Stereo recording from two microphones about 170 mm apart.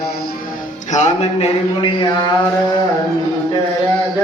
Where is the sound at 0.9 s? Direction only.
40° left (ahead or behind).